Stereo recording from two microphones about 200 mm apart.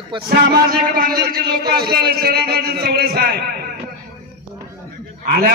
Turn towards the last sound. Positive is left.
turn(degrees=-50)  # may be behind; listen again after turning